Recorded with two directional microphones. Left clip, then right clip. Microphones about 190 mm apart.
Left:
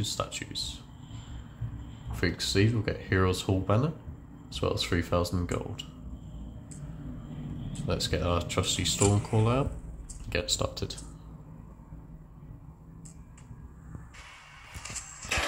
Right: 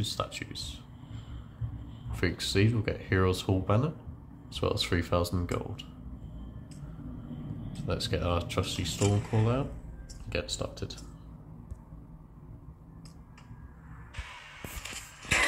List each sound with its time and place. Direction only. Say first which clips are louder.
0.0 s speech: left 1 dB; centre (ahead or behind)
2.1 s speech: left 1 dB; centre (ahead or behind)
7.7 s speech: left 2 dB; 5° left (ahead or behind)
14.8 s music: left 2 dB; 45° left (ahead or behind)